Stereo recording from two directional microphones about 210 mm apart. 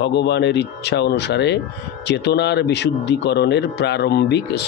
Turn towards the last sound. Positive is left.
turn(degrees=50)  # may be behind; listen again after turning